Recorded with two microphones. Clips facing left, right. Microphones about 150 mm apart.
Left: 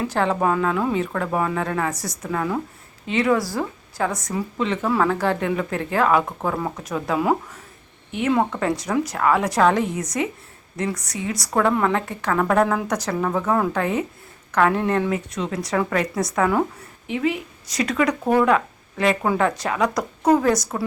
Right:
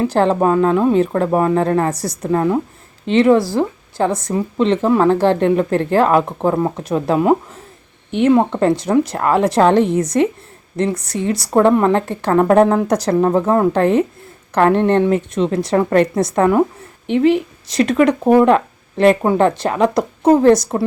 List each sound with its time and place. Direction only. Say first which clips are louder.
0.0 s a woman's voice: right 7 dB; 35° right (ahead or behind)
8.3 s a woman's voice: right 6 dB; 25° right (ahead or behind)
17.7 s speech: right 7 dB; 25° right (ahead or behind)